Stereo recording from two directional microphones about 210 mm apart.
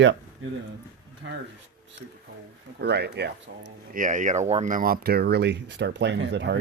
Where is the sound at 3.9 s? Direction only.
40° right (ahead or behind).